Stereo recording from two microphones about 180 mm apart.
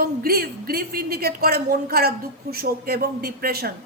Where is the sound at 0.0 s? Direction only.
55° right (ahead or behind).